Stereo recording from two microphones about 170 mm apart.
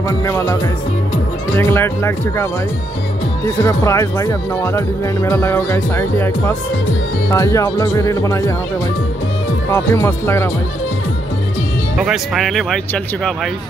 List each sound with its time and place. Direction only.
0.2 s speech: 15° left (ahead or behind)
1.6 s speech: 15° left (ahead or behind)
3.6 s speech: 15° left (ahead or behind)
9.7 s speech: 15° left (ahead or behind)
12.0 s speech: centre (ahead or behind)